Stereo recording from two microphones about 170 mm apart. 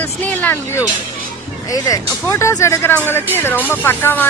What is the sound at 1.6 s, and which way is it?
Speech, 20° left (ahead or behind).